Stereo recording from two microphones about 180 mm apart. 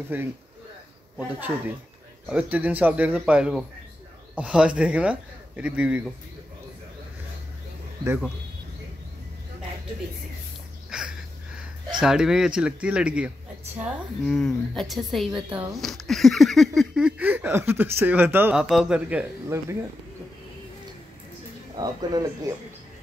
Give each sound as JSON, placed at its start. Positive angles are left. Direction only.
{"t": 0.1, "sound": "speech", "side_deg": -10}
{"t": 10.9, "sound": "a sound", "side_deg": -5}
{"t": 12.0, "sound": "a woman's voice", "side_deg": -5}
{"t": 21.7, "sound": "speech", "side_deg": -20}